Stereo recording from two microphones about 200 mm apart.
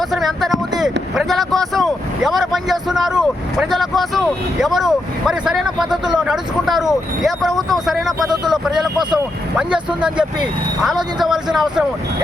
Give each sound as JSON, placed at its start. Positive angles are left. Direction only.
{"t": 0.1, "sound": "speech", "side_deg": 0}
{"t": 11.3, "sound": "speech", "side_deg": 0}